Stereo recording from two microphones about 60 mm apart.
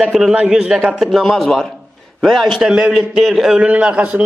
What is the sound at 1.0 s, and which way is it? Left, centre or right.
A man's voice, centre.